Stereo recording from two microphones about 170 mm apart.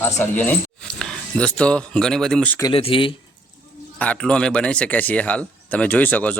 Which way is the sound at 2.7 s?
35° left (ahead or behind).